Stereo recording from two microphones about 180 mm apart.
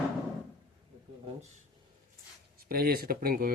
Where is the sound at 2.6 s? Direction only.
55° right (ahead or behind).